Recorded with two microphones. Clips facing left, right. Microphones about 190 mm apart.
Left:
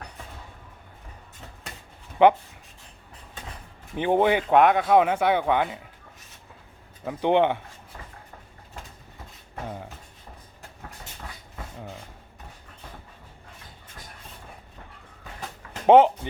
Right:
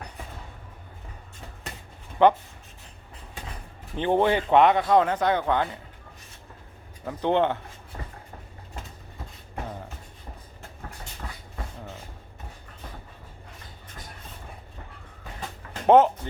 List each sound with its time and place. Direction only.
2.2 s speech: 15° left (ahead or behind)
3.9 s speech: 10° left (ahead or behind)
7.0 s speech: 10° left (ahead or behind)
15.9 s speech: 15° left (ahead or behind)